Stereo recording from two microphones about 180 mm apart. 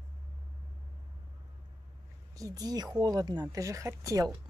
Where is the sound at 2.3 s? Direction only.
20° right (ahead or behind).